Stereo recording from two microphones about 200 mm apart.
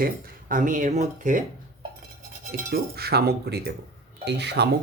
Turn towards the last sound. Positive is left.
turn(degrees=-55)  # may be behind; listen again after turning